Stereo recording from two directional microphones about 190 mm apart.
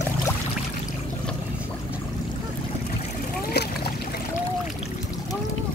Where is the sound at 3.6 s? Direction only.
60° left (ahead or behind).